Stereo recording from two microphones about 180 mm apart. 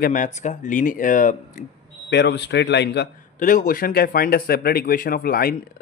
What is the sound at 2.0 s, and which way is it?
Speech, 70° left (ahead or behind).